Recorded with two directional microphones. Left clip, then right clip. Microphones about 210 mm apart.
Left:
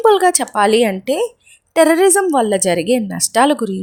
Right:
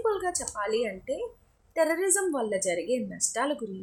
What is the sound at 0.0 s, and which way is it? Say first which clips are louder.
A woman's voice: left 17 dB; 45° left (ahead or behind).